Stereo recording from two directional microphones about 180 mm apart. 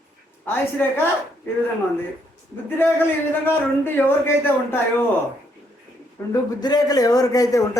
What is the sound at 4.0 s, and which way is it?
Speech, 10° left (ahead or behind).